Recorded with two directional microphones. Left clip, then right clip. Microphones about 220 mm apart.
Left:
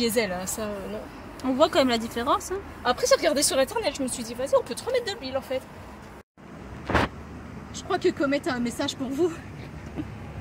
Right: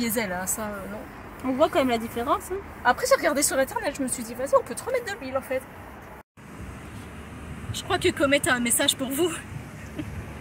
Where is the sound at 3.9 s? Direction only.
10° left (ahead or behind).